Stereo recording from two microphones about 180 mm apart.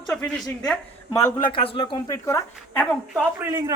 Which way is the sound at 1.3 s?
25° left (ahead or behind).